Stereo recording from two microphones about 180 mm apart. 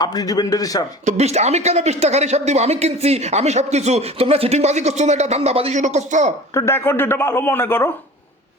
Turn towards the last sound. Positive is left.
turn(degrees=10)  # may be behind; listen again after turning